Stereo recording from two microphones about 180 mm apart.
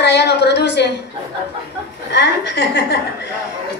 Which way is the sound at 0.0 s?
70° left (ahead or behind).